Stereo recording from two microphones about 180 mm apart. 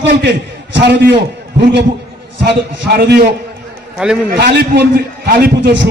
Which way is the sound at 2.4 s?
60° right (ahead or behind).